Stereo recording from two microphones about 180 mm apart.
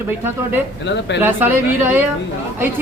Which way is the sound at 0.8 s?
75° left (ahead or behind).